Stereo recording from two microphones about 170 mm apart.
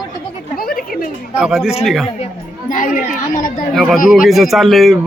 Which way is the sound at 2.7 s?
50° left (ahead or behind).